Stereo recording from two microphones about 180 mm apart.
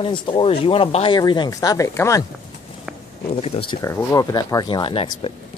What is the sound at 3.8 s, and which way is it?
Speech, 20° left (ahead or behind).